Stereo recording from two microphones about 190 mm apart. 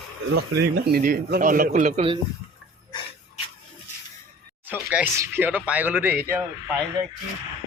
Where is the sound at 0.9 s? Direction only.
50° right (ahead or behind); by 2.2 s 35° right (ahead or behind).